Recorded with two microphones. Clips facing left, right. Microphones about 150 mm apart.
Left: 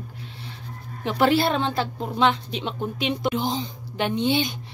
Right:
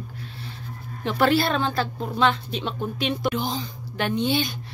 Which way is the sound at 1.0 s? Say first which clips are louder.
Left 1 dB; 15° left (ahead or behind).